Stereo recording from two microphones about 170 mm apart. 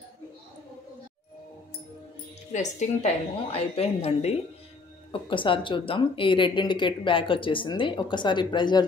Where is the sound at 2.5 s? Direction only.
45° left (ahead or behind).